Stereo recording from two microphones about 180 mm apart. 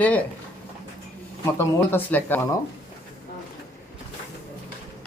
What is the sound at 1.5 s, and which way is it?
Speech, 10° left (ahead or behind).